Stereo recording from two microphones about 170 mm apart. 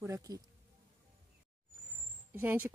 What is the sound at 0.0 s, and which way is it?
Speech, 20° right (ahead or behind).